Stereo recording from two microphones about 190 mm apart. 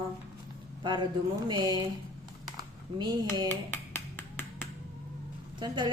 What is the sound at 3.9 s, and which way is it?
Finger snapping, 10° left (ahead or behind).